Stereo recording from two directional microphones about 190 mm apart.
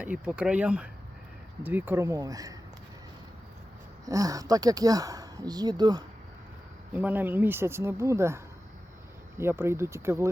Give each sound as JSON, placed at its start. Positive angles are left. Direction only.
{"t": 0.0, "sound": "speech", "side_deg": -5}
{"t": 4.0, "sound": "speech", "side_deg": -20}
{"t": 6.9, "sound": "speech", "side_deg": -10}
{"t": 9.4, "sound": "speech", "side_deg": -15}